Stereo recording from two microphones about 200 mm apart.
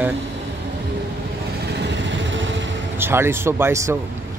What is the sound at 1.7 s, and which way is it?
Vehicle, 60° right (ahead or behind).